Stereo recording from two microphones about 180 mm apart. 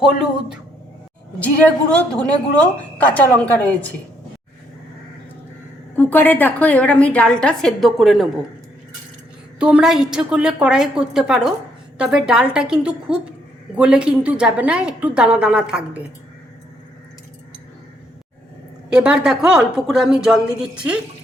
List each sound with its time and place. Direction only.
0.0 s a woman's voice: 5° right (ahead or behind)
1.4 s a woman's voice: 5° left (ahead or behind)
6.0 s a woman's voice: 10° left (ahead or behind)
9.6 s a woman's voice: 5° right (ahead or behind)
18.9 s a woman's voice: 5° right (ahead or behind)